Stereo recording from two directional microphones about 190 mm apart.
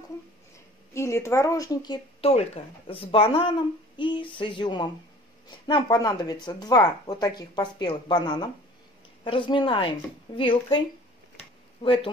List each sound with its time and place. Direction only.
0.9 s a woman's voice: 15° left (ahead or behind)
2.2 s speech: 35° left (ahead or behind)
11.8 s speech: 30° left (ahead or behind)